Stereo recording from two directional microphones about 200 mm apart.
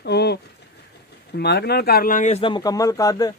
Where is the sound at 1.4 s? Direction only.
55° left (ahead or behind).